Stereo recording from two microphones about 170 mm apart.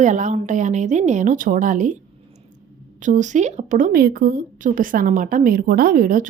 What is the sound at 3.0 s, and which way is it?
A woman's voice, 45° right (ahead or behind).